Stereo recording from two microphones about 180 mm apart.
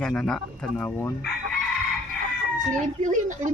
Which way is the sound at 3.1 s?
45° right (ahead or behind).